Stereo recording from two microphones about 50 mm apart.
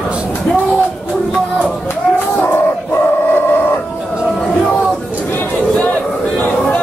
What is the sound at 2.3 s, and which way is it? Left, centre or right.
Dog, left.